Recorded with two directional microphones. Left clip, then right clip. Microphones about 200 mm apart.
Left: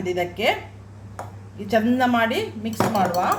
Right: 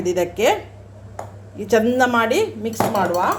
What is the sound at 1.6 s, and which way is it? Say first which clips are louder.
Speech: right 4 dB; 35° right (ahead or behind).